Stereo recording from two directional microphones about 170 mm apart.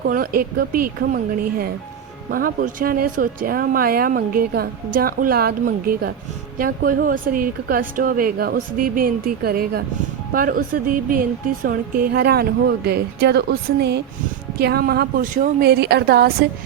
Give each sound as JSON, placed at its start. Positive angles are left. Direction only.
{"t": 0.0, "sound": "speech", "side_deg": -60}
{"t": 15.6, "sound": "a woman's voice", "side_deg": -70}